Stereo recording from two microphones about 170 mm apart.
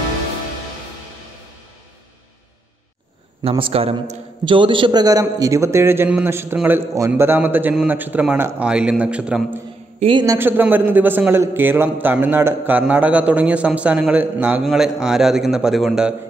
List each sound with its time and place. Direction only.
3.4 s a man's voice: 35° right (ahead or behind); by 9.6 s 5° right (ahead or behind)
9.9 s a man's voice: 30° right (ahead or behind)
10.2 s a man's voice: 15° right (ahead or behind)